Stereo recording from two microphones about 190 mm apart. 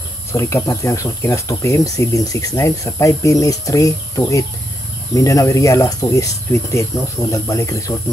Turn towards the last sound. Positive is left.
turn(degrees=15)  # may be behind; listen again after turning